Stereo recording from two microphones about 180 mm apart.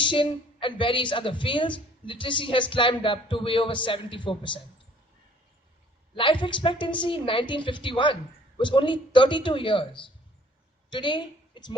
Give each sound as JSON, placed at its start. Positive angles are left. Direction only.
{"t": 0.0, "sound": "a woman's voice", "side_deg": 25}
{"t": 6.1, "sound": "a woman's voice", "side_deg": 30}
{"t": 10.8, "sound": "a sound", "side_deg": 25}